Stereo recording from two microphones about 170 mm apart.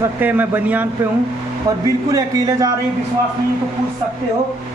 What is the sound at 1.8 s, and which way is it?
Speech, 20° right (ahead or behind).